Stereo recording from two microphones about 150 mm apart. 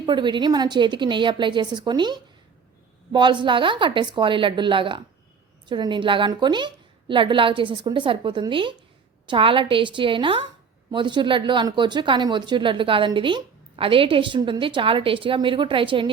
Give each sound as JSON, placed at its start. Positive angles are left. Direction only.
{"t": 0.0, "sound": "speech", "side_deg": -30}